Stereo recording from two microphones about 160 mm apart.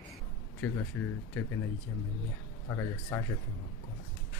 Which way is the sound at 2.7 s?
20° left (ahead or behind).